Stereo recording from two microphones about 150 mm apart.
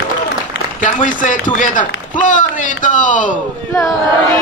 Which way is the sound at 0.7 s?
55° left (ahead or behind).